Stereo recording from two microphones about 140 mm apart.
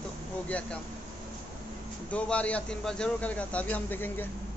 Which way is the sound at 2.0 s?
10° left (ahead or behind).